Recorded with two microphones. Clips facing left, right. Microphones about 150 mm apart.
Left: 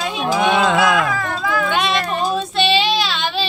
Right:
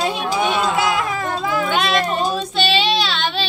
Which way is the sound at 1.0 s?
25° right (ahead or behind).